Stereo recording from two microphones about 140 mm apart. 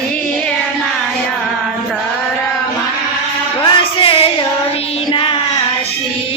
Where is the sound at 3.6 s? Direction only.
40° left (ahead or behind).